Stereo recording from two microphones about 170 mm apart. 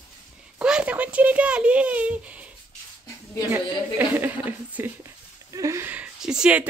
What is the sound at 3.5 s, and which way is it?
A woman's voice, 10° right (ahead or behind).